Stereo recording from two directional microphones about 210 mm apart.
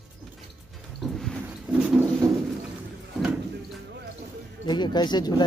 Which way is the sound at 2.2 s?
15° right (ahead or behind).